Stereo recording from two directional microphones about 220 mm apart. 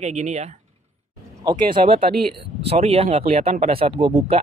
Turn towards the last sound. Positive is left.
turn(degrees=-25)  # may be behind; listen again after turning